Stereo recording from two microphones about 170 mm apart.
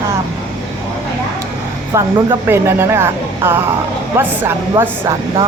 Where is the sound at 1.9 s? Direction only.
15° right (ahead or behind).